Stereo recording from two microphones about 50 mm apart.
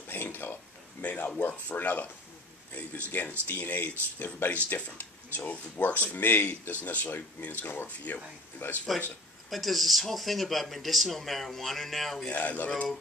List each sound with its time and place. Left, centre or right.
0.1 s a sound: left
1.0 s speech: left
4.9 s speech: left
9.5 s speech: centre
12.3 s speech: left